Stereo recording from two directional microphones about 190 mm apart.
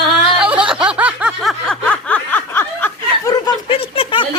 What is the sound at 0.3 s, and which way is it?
Snicker, 5° right (ahead or behind).